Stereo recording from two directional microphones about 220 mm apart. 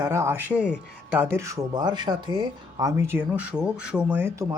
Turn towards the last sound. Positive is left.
turn(degrees=-15)  # may be behind; listen again after turning